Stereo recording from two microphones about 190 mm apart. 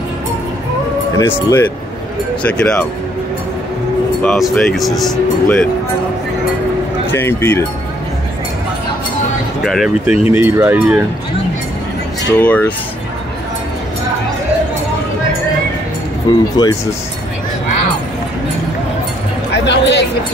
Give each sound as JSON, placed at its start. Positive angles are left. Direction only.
{"t": 1.1, "sound": "speech", "side_deg": 15}
{"t": 4.2, "sound": "speech", "side_deg": 5}
{"t": 7.1, "sound": "speech", "side_deg": 10}
{"t": 9.6, "sound": "speech", "side_deg": 0}
{"t": 10.1, "sound": "speech", "side_deg": 30}
{"t": 10.4, "sound": "speech", "side_deg": -10}
{"t": 12.4, "sound": "speech", "side_deg": 5}
{"t": 16.3, "sound": "speech", "side_deg": 20}
{"t": 19.6, "sound": "a sound", "side_deg": 65}